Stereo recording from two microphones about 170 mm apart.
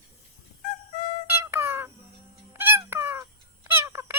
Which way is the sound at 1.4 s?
15° right (ahead or behind).